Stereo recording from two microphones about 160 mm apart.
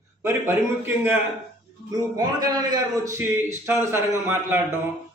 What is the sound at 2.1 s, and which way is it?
A man's voice, 25° right (ahead or behind).